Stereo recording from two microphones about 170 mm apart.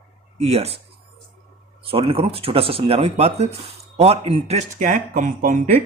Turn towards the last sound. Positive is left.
turn(degrees=-50)  # may be behind; listen again after turning